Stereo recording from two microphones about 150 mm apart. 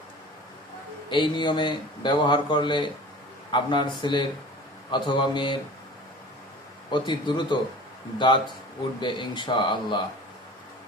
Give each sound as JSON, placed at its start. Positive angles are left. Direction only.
{"t": 1.1, "sound": "speech", "side_deg": 30}
{"t": 6.9, "sound": "speech", "side_deg": 30}
{"t": 9.0, "sound": "speech", "side_deg": 30}